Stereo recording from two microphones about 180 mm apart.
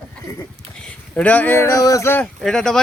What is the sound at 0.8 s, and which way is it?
Speech, 5° left (ahead or behind).